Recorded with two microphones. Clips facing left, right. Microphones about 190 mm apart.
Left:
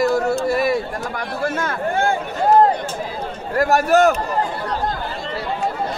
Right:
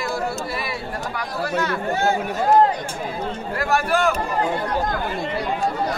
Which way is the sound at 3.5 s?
45° left (ahead or behind).